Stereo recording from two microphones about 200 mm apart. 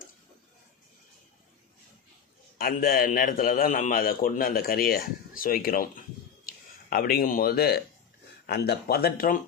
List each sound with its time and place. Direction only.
2.6 s a man's voice: 45° left (ahead or behind)